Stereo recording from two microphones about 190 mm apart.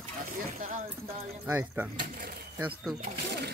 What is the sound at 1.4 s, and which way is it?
Speech, 10° right (ahead or behind).